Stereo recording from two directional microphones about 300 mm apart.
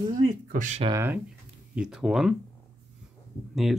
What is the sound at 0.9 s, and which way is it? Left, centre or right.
Speech, centre.